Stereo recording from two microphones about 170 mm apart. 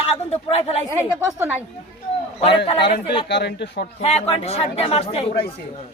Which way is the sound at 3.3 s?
90° left.